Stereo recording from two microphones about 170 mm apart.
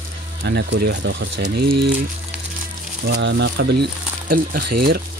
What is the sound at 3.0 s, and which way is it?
Speech, 90° right.